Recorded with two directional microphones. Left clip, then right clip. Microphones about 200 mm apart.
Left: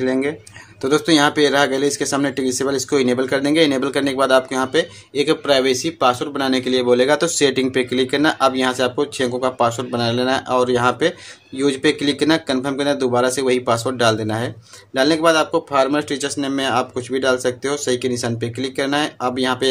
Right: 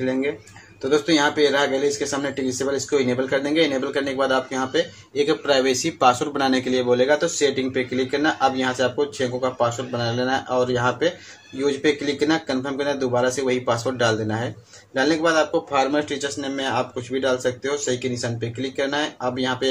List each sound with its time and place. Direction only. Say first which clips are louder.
0.0 s speech: left 4 dB; 40° left (ahead or behind)